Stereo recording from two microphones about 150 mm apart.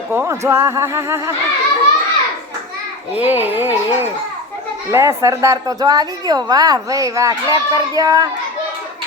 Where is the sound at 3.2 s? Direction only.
10° right (ahead or behind).